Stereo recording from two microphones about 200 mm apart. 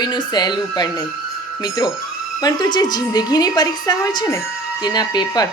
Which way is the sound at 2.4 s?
20° left (ahead or behind).